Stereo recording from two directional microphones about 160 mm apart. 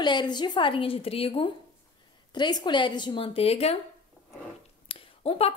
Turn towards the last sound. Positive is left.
turn(degrees=35)  # may be behind; listen again after turning